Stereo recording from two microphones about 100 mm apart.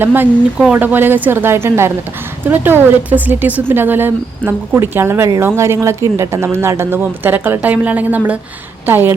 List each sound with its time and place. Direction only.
0.0 s a woman's voice: 20° right (ahead or behind)